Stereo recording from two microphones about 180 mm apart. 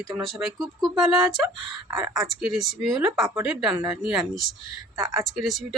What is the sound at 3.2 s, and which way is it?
Speech, 15° right (ahead or behind).